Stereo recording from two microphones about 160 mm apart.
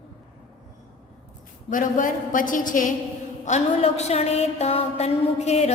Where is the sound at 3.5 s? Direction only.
45° left (ahead or behind).